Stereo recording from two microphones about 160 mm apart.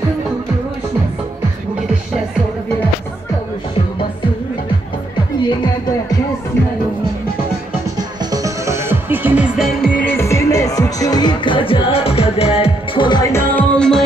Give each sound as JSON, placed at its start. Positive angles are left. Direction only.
{"t": 8.3, "sound": "music", "side_deg": -20}
{"t": 13.3, "sound": "music", "side_deg": 10}